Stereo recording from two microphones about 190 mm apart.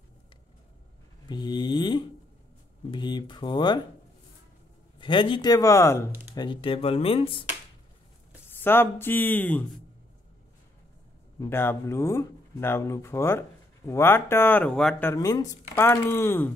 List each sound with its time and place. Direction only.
1.3 s a sound: 25° left (ahead or behind)
2.9 s speech: 25° left (ahead or behind)
4.9 s speech: 25° left (ahead or behind)
6.3 s speech: 25° left (ahead or behind)
8.5 s speech: 10° left (ahead or behind)
11.3 s speech: 10° left (ahead or behind)